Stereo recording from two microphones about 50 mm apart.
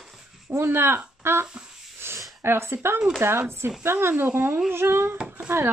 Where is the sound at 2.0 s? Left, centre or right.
Right.